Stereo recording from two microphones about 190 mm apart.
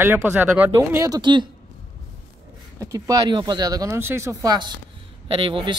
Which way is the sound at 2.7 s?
15° right (ahead or behind).